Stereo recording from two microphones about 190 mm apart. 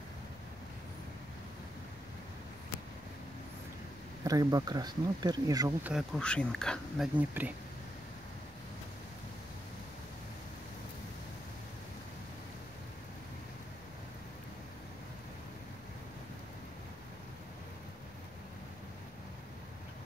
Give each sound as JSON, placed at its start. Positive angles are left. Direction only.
{"t": 4.2, "sound": "speech", "side_deg": -20}
{"t": 5.9, "sound": "speech", "side_deg": 0}
{"t": 7.2, "sound": "speech", "side_deg": -10}